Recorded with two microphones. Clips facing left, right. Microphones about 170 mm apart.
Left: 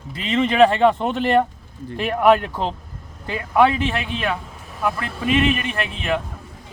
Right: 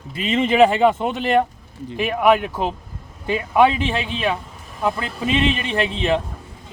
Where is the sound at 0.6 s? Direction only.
10° right (ahead or behind).